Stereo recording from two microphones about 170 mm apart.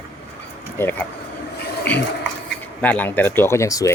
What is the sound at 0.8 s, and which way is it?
Speech, 10° left (ahead or behind).